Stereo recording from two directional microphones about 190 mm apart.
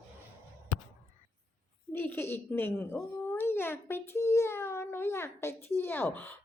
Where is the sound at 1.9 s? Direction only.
10° left (ahead or behind).